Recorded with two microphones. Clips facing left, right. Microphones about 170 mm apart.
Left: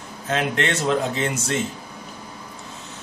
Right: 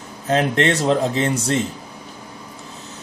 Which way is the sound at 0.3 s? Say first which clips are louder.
Right 5 dB; 35° right (ahead or behind).